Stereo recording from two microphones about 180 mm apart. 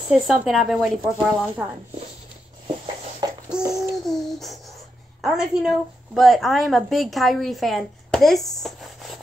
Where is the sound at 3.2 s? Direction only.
25° right (ahead or behind).